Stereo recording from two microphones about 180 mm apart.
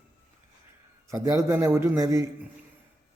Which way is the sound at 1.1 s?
15° right (ahead or behind).